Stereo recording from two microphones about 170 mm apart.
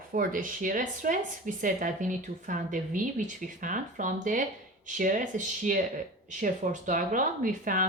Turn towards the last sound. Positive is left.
turn(degrees=-55)  # may be behind; listen again after turning